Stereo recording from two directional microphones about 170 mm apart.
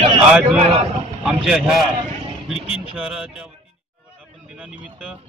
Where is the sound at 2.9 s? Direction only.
5° right (ahead or behind).